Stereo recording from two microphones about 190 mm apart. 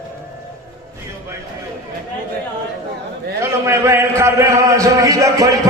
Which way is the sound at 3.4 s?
15° right (ahead or behind).